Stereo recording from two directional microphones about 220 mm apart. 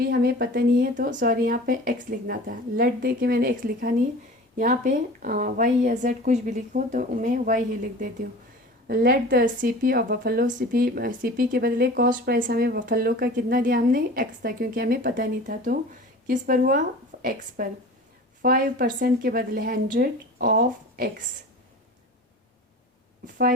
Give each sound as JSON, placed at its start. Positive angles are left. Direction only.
{"t": 0.0, "sound": "a woman's voice", "side_deg": -45}
{"t": 17.1, "sound": "a sound", "side_deg": -45}
{"t": 17.6, "sound": "a woman's voice", "side_deg": -40}